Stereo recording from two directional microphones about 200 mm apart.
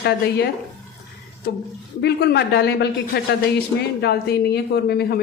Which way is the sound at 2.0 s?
55° left (ahead or behind).